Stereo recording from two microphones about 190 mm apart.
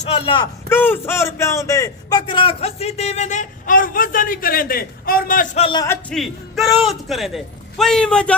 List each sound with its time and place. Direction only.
0.1 s speech: 30° left (ahead or behind)
0.7 s a man's voice: 10° left (ahead or behind); by 5.5 s 50° left (ahead or behind)
5.5 s speech: 30° left (ahead or behind)
5.8 s a man's voice: 10° left (ahead or behind)
6.1 s a man's voice: centre (ahead or behind)